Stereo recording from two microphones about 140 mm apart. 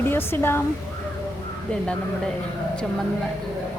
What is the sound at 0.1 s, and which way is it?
Speech, 15° left (ahead or behind).